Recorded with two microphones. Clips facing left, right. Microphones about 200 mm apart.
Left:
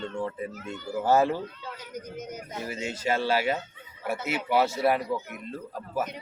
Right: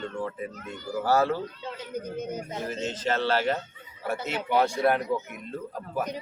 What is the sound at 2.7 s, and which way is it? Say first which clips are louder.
Speech: left 1 dB; 10° left (ahead or behind).